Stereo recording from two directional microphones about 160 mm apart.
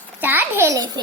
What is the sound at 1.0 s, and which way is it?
Speech, 25° right (ahead or behind).